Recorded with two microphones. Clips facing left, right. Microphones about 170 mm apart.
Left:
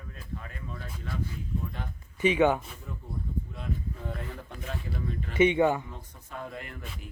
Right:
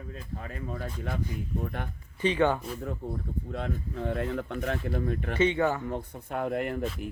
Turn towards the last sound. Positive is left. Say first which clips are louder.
# right 10 dB
turn(degrees=-60)  # may be behind; listen again after turning